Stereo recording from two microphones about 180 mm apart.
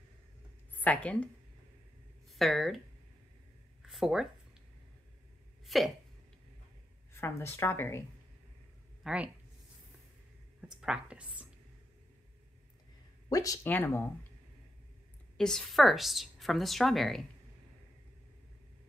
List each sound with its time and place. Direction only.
0.7 s a woman's voice: 10° left (ahead or behind)
3.8 s a sound: centre (ahead or behind)
5.7 s hiccup: centre (ahead or behind)
7.1 s speech: 15° left (ahead or behind)
9.0 s speech: 5° right (ahead or behind)
10.7 s a woman's voice: 5° right (ahead or behind)
13.3 s speech: 20° left (ahead or behind)
15.3 s a woman's voice: 5° left (ahead or behind)